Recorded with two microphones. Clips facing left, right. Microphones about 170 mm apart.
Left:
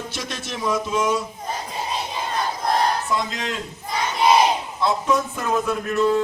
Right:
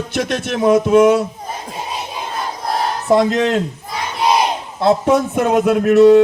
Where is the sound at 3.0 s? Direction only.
65° right (ahead or behind).